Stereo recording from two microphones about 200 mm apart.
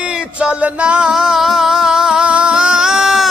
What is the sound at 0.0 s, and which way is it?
Music, 5° right (ahead or behind).